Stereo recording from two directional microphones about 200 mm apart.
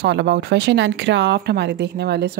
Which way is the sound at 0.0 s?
60° right (ahead or behind).